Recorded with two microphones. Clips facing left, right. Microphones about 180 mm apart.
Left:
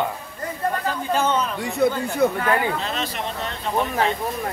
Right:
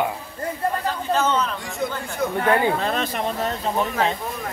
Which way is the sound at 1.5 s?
65° left (ahead or behind).